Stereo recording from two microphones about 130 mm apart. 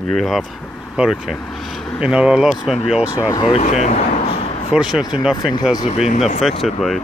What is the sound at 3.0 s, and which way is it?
Speech, 25° left (ahead or behind).